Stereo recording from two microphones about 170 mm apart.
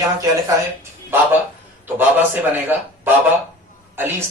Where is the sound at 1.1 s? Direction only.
15° right (ahead or behind).